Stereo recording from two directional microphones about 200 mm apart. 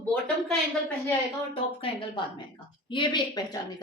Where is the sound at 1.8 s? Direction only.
25° left (ahead or behind).